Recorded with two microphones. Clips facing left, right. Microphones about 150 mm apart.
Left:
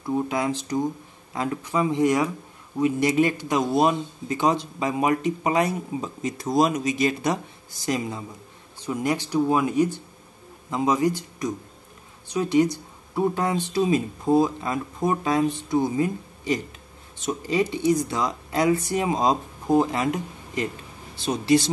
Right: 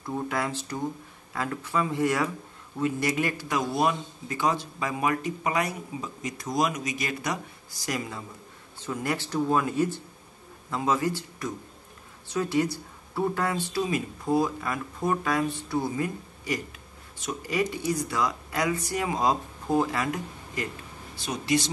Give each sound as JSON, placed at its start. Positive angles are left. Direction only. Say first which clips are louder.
{"t": 0.0, "sound": "a man's voice", "louder": "left 5 dB", "side_deg": 15}